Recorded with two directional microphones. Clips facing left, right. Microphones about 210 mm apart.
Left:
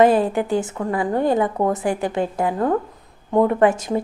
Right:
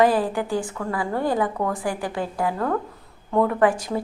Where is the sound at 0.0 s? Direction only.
25° left (ahead or behind).